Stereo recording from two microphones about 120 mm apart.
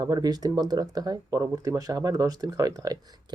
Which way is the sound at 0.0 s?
35° right (ahead or behind).